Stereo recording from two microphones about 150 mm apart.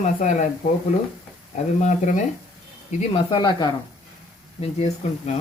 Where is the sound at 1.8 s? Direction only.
55° left (ahead or behind).